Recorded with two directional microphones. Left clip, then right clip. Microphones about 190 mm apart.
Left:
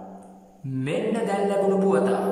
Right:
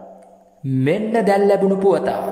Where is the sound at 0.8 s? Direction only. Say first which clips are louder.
Right 7 dB; 35° right (ahead or behind).